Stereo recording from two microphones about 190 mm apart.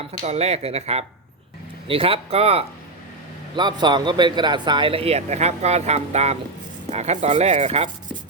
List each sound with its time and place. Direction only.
0.3 s speech: 35° right (ahead or behind)